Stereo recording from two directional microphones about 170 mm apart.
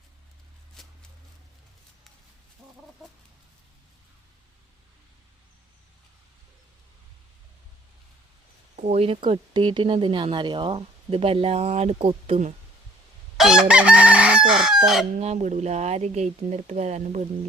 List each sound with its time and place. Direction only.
0.8 s a sound: 5° left (ahead or behind)
8.7 s speech: 40° right (ahead or behind)
13.3 s chicken: 5° right (ahead or behind)
15.1 s speech: 40° right (ahead or behind)